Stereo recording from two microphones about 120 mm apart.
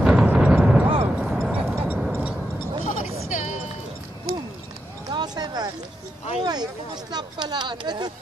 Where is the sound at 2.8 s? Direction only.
85° left.